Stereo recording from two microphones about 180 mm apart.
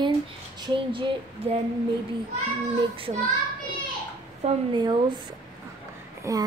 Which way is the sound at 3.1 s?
35° right (ahead or behind).